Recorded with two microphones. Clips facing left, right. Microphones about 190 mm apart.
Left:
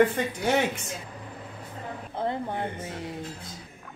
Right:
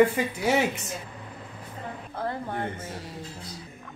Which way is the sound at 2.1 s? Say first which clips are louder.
Left 2 dB; 20° left (ahead or behind).